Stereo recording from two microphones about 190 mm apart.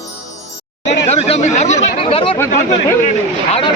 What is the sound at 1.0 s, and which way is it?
Speech, 35° left (ahead or behind).